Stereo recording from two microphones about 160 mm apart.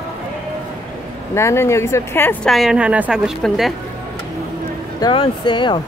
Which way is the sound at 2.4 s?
Centre (ahead or behind).